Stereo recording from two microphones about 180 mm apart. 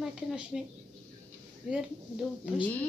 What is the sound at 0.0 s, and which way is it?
Speech, 5° right (ahead or behind).